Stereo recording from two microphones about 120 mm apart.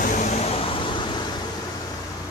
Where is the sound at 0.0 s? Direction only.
80° left; by 1.2 s 40° left (ahead or behind).